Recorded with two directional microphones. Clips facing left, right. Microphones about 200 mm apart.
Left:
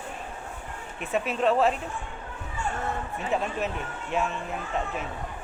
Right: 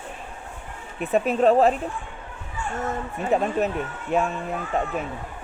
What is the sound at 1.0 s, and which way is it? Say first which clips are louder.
Speech: right 6 dB; 40° right (ahead or behind).